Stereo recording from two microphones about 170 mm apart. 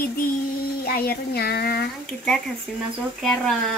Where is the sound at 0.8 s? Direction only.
65° left (ahead or behind).